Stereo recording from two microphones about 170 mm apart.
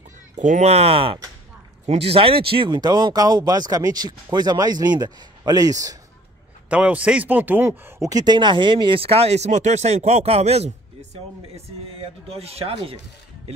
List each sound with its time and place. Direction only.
0.4 s speech: 45° right (ahead or behind); by 5.9 s 20° right (ahead or behind)
6.7 s speech: 5° right (ahead or behind); by 12.9 s 35° right (ahead or behind)